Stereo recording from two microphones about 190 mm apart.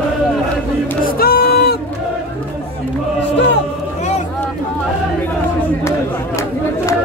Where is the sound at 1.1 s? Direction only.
50° left (ahead or behind).